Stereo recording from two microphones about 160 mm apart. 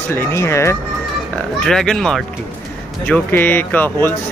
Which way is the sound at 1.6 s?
5° left (ahead or behind).